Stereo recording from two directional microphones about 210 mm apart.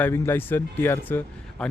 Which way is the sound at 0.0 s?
10° left (ahead or behind).